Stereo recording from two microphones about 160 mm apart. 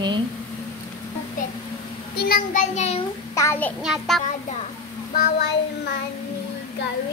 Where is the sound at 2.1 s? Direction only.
70° left (ahead or behind).